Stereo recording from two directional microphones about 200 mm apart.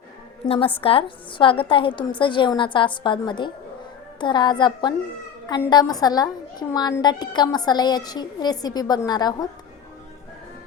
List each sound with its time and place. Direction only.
0.4 s a child's voice: 30° left (ahead or behind)